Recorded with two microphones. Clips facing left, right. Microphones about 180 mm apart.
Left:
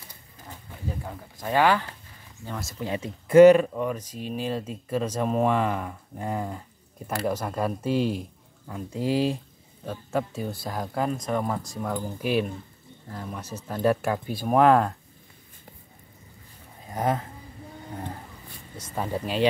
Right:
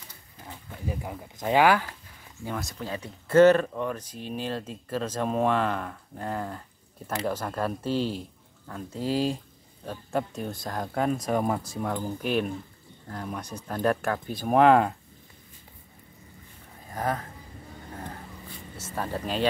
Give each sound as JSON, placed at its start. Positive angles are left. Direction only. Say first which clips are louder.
{"t": 0.8, "sound": "speech", "louder": "right 1 dB", "side_deg": -15}
{"t": 2.4, "sound": "speech", "louder": "right 2 dB", "side_deg": 0}
{"t": 2.8, "sound": "speech", "louder": "left 4 dB", "side_deg": 20}
{"t": 11.2, "sound": "speech", "louder": "right 1 dB", "side_deg": -10}
{"t": 16.9, "sound": "speech", "louder": "left 3 dB", "side_deg": 20}
{"t": 18.9, "sound": "speech", "louder": "left 2 dB", "side_deg": 10}